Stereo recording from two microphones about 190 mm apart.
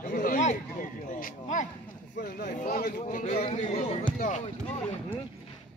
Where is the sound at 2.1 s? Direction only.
60° left (ahead or behind).